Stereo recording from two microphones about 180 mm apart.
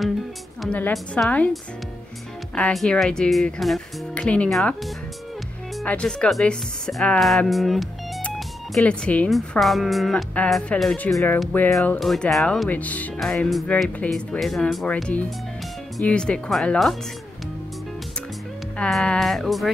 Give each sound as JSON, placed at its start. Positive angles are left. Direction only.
{"t": 0.6, "sound": "a woman's voice", "side_deg": 10}
{"t": 18.8, "sound": "speech", "side_deg": 5}